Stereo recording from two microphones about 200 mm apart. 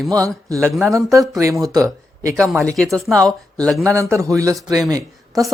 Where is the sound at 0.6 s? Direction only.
Centre (ahead or behind).